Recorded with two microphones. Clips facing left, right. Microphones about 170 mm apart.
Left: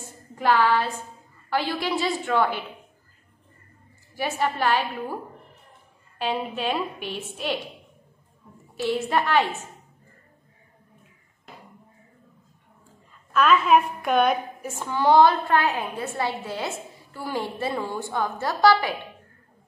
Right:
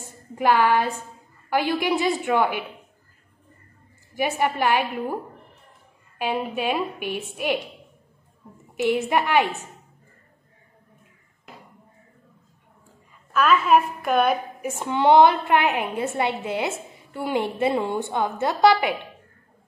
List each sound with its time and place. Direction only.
0.0 s a sound: 15° right (ahead or behind)
1.5 s a woman's voice: 15° right (ahead or behind)
4.1 s a woman's voice: 15° right (ahead or behind)
8.7 s a woman's voice: 15° right (ahead or behind)
13.3 s a woman's voice: 5° right (ahead or behind)
14.6 s a woman's voice: 20° right (ahead or behind)